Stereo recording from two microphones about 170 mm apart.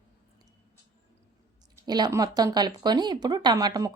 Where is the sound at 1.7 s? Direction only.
25° right (ahead or behind).